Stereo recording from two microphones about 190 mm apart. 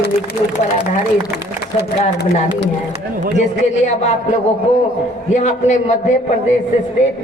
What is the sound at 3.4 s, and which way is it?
Speech, 40° left (ahead or behind).